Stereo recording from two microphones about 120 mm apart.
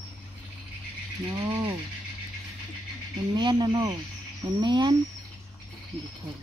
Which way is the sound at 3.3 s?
40° right (ahead or behind).